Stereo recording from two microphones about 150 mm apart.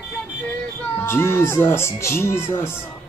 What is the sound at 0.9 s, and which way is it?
Speech, 15° left (ahead or behind).